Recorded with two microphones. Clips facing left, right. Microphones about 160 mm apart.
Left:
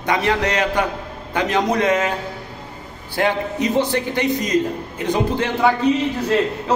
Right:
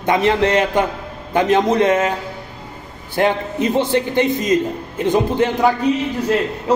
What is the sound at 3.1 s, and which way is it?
A man's voice, 25° right (ahead or behind).